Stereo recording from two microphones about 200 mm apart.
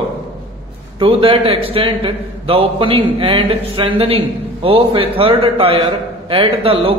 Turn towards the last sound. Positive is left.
turn(degrees=-25)  # may be behind; listen again after turning